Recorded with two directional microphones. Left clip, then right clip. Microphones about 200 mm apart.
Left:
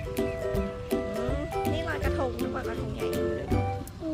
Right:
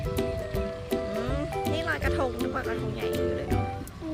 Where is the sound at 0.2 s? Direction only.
Centre (ahead or behind).